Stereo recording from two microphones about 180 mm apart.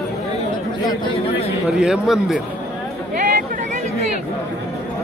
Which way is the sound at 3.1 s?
45° right (ahead or behind).